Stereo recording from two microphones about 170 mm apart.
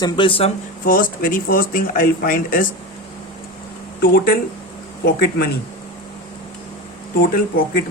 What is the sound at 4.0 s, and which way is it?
Speech, 65° left (ahead or behind).